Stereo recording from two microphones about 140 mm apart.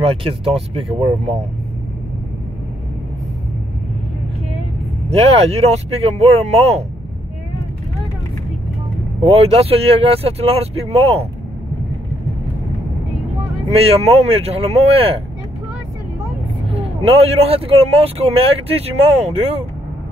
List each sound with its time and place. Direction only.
0.0 s speech: 40° right (ahead or behind)
5.1 s speech: 45° right (ahead or behind)
9.2 s speech: 45° right (ahead or behind)
13.7 s speech: 45° right (ahead or behind)
16.6 s speech: 45° right (ahead or behind)